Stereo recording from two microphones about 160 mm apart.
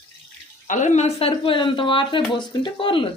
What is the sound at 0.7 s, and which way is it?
Speech, 50° left (ahead or behind).